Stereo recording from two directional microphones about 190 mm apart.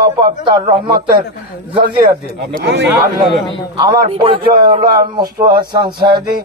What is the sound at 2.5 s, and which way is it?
Speech, 55° right (ahead or behind).